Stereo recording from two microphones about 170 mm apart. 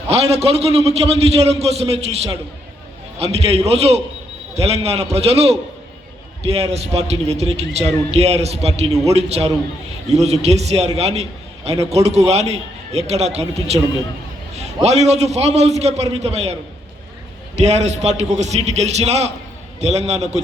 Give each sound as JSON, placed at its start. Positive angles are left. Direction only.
{"t": 0.1, "sound": "a man's voice", "side_deg": -35}
{"t": 3.3, "sound": "a man's voice", "side_deg": -35}
{"t": 17.6, "sound": "a man's voice", "side_deg": -40}